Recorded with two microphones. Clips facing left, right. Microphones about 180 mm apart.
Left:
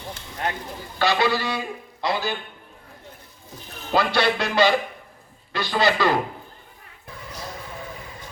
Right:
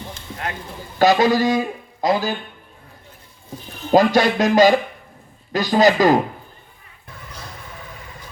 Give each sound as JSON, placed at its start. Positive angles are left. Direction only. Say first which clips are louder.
{"t": 0.9, "sound": "a man's voice", "louder": "right 7 dB", "side_deg": -45}
{"t": 3.9, "sound": "a man's voice", "louder": "right 7 dB", "side_deg": -45}